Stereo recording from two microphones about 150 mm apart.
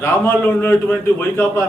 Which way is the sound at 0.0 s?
15° left (ahead or behind).